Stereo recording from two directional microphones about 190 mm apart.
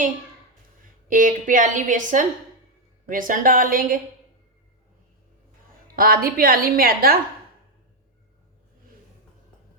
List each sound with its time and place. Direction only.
1.1 s a woman's voice: 45° right (ahead or behind)
6.0 s a woman's voice: 50° right (ahead or behind)